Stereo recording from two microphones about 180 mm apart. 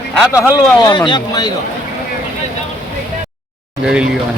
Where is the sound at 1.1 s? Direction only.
25° left (ahead or behind).